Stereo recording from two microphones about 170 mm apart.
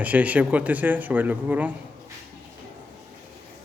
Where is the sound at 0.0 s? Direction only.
10° right (ahead or behind).